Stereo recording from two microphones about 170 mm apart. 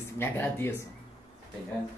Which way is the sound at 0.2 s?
15° left (ahead or behind).